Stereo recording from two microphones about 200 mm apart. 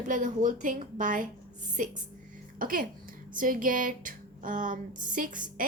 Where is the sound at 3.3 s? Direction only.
45° right (ahead or behind).